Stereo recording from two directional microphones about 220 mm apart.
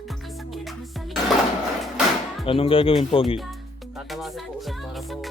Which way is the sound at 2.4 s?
25° left (ahead or behind).